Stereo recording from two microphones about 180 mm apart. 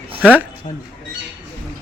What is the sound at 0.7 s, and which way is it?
Speech, 40° left (ahead or behind).